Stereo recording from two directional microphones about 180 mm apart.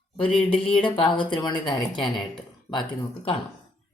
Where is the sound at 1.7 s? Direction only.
Centre (ahead or behind).